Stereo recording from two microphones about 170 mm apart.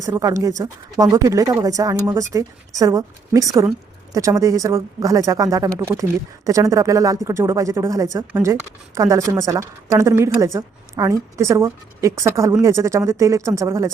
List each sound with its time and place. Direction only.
0.0 s a woman's voice: 20° right (ahead or behind)